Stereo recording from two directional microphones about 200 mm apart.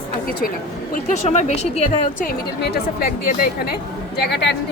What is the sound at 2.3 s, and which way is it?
A woman's voice, 50° left (ahead or behind).